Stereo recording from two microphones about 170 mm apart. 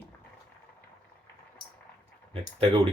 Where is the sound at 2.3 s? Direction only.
35° right (ahead or behind).